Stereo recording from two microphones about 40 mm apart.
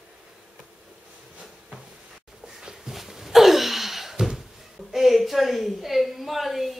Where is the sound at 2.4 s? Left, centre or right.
Centre.